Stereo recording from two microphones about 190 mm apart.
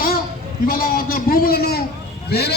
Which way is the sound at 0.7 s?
50° left (ahead or behind).